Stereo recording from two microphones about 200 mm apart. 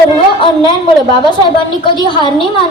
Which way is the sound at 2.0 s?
20° right (ahead or behind).